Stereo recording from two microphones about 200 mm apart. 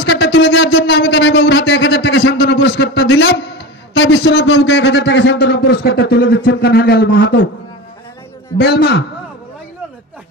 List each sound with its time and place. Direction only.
0.0 s speech: 60° left (ahead or behind)
8.5 s a man's voice: 55° left (ahead or behind)